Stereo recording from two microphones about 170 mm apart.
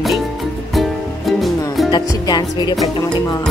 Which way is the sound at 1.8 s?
25° left (ahead or behind).